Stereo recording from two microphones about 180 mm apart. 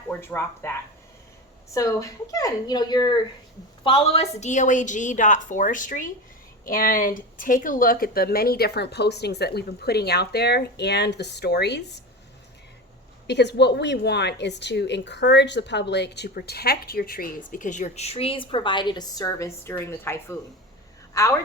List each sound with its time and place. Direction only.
0.1 s speech: 15° left (ahead or behind)
1.7 s a woman's voice: 20° left (ahead or behind); by 11.8 s 65° left (ahead or behind)
13.2 s a woman's voice: 70° left (ahead or behind); by 21.3 s 15° left (ahead or behind)